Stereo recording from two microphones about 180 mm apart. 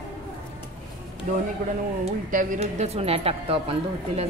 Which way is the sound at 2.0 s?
40° right (ahead or behind).